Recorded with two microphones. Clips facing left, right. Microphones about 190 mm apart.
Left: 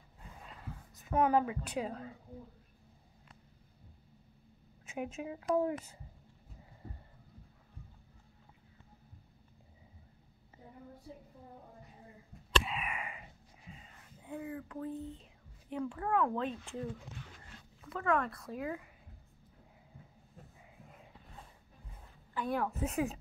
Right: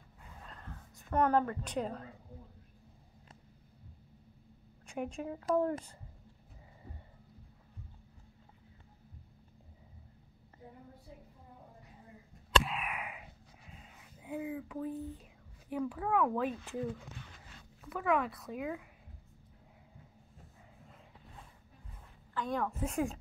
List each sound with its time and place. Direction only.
0.5 s a sound: 5° left (ahead or behind)
4.8 s speech: 5° left (ahead or behind)
12.6 s a sound: centre (ahead or behind)
15.0 s speech: 25° left (ahead or behind)
15.7 s speech: 5° right (ahead or behind)
17.8 s speech: 5° right (ahead or behind)
22.3 s speech: 10° left (ahead or behind)